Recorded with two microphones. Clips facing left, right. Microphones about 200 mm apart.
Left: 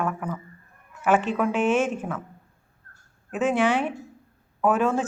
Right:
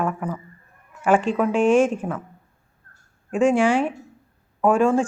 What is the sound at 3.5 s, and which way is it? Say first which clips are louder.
Speech: right 1 dB; 30° right (ahead or behind).